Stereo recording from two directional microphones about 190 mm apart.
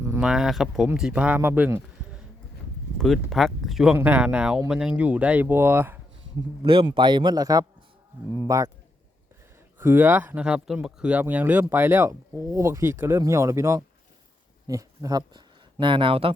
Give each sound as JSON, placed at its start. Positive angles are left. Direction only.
{"t": 0.1, "sound": "speech", "side_deg": -5}
{"t": 6.6, "sound": "a man's voice", "side_deg": -25}
{"t": 9.7, "sound": "a man's voice", "side_deg": -10}